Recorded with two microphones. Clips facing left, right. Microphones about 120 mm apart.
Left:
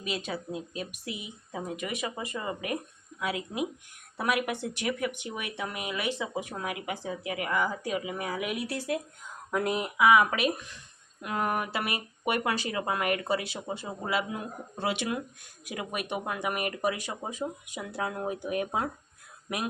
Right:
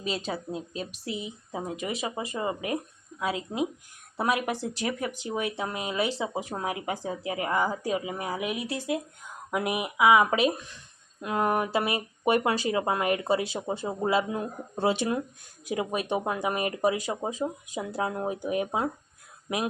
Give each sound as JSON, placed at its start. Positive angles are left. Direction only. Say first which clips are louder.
{"t": 0.0, "sound": "speech", "louder": "right 2 dB", "side_deg": -30}